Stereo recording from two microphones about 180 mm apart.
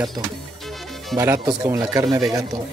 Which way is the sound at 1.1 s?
20° right (ahead or behind).